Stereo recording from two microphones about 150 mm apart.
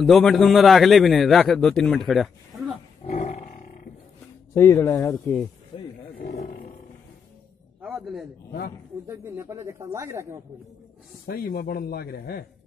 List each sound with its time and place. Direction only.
0.0 s a man's voice: centre (ahead or behind)
3.1 s roar: 45° left (ahead or behind)
4.6 s speech: 15° left (ahead or behind)
5.7 s speech: 35° left (ahead or behind)
7.8 s a man's voice: centre (ahead or behind)
8.5 s speech: 90° left
9.0 s speech: 20° right (ahead or behind)
11.2 s speech: 85° left